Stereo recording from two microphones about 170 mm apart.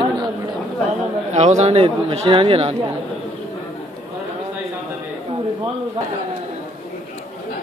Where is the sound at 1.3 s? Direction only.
40° right (ahead or behind).